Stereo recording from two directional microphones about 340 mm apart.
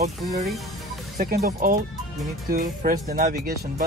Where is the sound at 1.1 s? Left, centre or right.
Right.